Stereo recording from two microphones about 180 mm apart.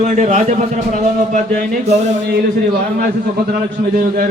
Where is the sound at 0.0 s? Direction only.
40° right (ahead or behind).